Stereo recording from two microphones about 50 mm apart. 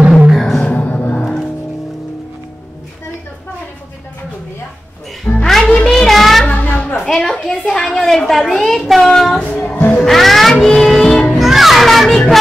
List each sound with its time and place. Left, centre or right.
0.3 s music: centre
0.7 s music: left
1.2 s music: centre
5.2 s music: centre
6.0 s child singing: centre
6.4 s a sound: left
7.0 s a sound: centre
9.1 s train: centre
9.4 s music: left
9.9 s music: centre
11.3 s music: centre